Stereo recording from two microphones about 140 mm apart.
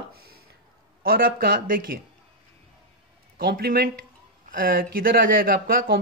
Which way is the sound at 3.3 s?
90° right.